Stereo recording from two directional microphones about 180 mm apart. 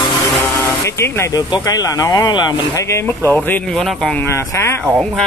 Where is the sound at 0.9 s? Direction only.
15° left (ahead or behind).